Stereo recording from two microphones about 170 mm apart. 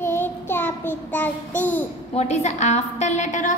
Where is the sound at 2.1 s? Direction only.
40° left (ahead or behind).